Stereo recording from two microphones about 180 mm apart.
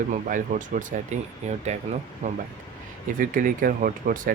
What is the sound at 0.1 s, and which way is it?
Speech, 45° right (ahead or behind).